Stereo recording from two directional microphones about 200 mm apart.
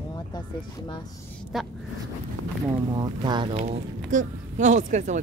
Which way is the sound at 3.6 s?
35° right (ahead or behind).